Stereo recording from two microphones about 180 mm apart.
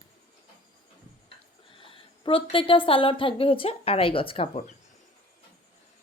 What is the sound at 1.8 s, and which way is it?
Speech, 30° left (ahead or behind).